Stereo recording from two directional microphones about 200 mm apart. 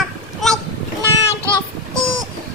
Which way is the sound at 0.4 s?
Centre (ahead or behind).